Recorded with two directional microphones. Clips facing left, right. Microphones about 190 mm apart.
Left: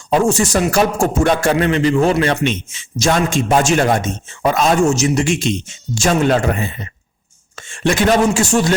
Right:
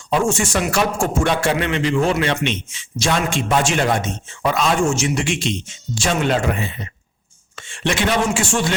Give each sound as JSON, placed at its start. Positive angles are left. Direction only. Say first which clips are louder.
{"t": 0.1, "sound": "a man's voice", "louder": "left 4 dB", "side_deg": 35}